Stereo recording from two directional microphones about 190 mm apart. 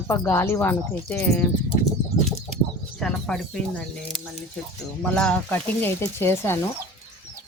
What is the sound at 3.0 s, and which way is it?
Speech, 5° left (ahead or behind).